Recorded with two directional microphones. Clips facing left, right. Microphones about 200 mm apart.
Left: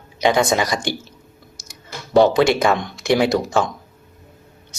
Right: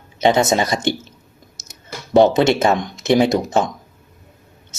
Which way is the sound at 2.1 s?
25° right (ahead or behind).